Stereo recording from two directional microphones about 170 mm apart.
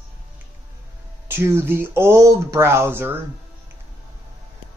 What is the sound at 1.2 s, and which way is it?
Speech, 15° right (ahead or behind).